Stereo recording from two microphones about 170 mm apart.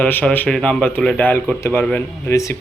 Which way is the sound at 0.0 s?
10° left (ahead or behind).